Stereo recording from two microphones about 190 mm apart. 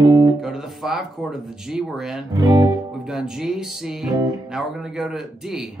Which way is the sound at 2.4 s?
20° right (ahead or behind).